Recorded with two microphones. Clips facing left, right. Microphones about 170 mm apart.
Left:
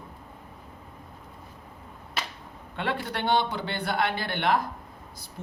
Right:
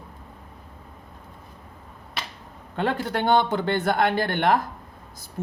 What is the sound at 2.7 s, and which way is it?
Speech, 45° right (ahead or behind).